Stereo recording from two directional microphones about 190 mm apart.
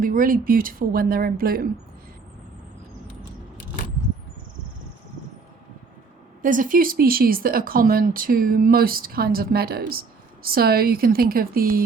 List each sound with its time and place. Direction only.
0.0 s speech: 45° right (ahead or behind)
6.4 s speech: 45° right (ahead or behind)